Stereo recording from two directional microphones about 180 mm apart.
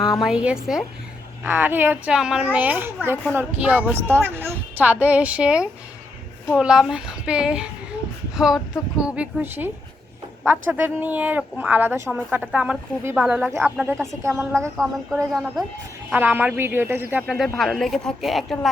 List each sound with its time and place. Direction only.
0.2 s a woman's voice: 5° right (ahead or behind)
15.3 s a woman's voice: centre (ahead or behind)
16.1 s a woman's voice: 10° right (ahead or behind)